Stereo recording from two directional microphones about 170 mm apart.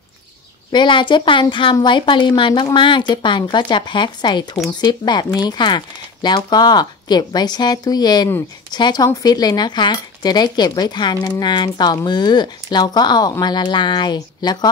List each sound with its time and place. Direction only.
0.7 s speech: 30° left (ahead or behind)